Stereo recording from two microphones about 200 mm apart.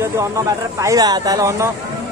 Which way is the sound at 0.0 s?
15° right (ahead or behind).